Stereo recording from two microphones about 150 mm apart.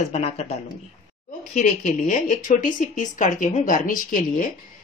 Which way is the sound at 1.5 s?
55° left (ahead or behind).